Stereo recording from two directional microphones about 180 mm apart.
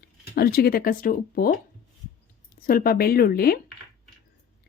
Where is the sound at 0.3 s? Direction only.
60° left (ahead or behind).